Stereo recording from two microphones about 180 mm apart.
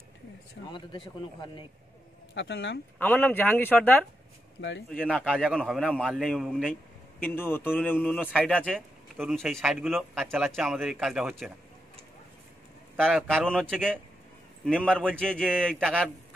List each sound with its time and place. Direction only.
0.7 s speech: 25° left (ahead or behind)
2.3 s speech: 80° left
3.0 s speech: 10° left (ahead or behind)
4.6 s speech: 90° left
5.0 s speech: centre (ahead or behind)
7.2 s speech: 10° left (ahead or behind)
12.9 s speech: centre (ahead or behind)